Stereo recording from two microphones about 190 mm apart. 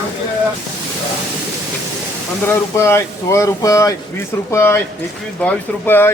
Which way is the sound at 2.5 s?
15° left (ahead or behind).